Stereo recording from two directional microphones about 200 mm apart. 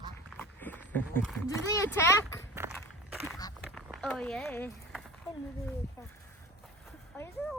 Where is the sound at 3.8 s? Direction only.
5° left (ahead or behind).